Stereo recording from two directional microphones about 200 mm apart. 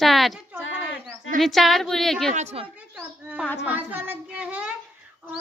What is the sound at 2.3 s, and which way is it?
Speech, 30° right (ahead or behind).